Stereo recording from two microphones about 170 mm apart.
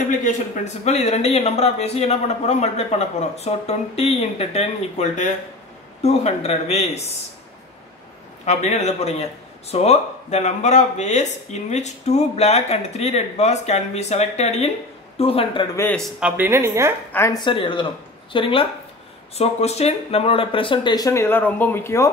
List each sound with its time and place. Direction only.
0.8 s speech: 40° left (ahead or behind)
8.5 s speech: 40° left (ahead or behind)
15.7 s speech: 15° left (ahead or behind)
16.0 s a woman's voice: 5° right (ahead or behind)
17.1 s speech: 15° left (ahead or behind)
17.4 s speech: 30° left (ahead or behind)